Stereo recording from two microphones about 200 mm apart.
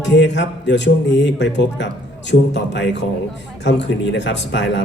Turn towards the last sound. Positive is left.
turn(degrees=65)  # may be behind; listen again after turning